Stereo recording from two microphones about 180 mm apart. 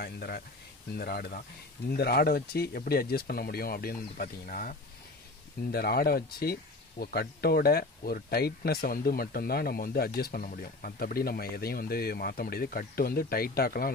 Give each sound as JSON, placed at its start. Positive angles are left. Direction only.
{"t": 0.0, "sound": "speech", "side_deg": 60}